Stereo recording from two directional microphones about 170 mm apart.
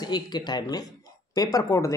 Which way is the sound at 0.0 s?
25° left (ahead or behind).